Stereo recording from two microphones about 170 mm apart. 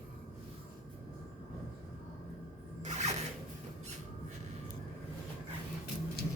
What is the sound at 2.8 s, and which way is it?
Zipper, 40° right (ahead or behind).